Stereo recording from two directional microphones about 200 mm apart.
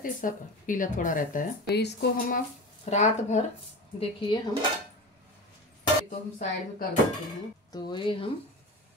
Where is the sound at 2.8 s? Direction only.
35° left (ahead or behind).